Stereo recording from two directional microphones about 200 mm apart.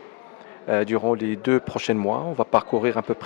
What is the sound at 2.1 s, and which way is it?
Speech, 30° left (ahead or behind).